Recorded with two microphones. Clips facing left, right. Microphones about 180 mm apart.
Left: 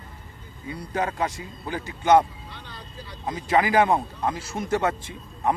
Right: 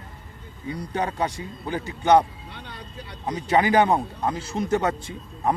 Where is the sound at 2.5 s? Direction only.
65° right (ahead or behind).